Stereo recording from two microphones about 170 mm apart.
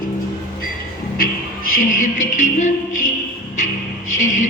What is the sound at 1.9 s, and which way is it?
Music, 50° left (ahead or behind).